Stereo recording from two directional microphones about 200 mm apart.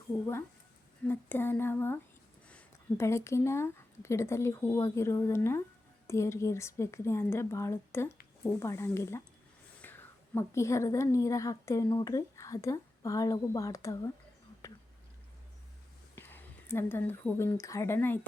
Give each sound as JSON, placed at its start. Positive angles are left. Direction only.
{"t": 1.0, "sound": "a woman's voice", "side_deg": 10}
{"t": 14.6, "sound": "whispering", "side_deg": 15}
{"t": 16.1, "sound": "speech", "side_deg": 10}